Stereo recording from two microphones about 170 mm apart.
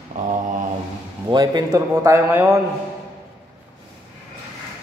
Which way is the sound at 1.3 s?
25° right (ahead or behind).